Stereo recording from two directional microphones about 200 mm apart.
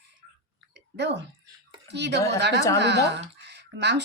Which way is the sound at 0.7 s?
60° right (ahead or behind).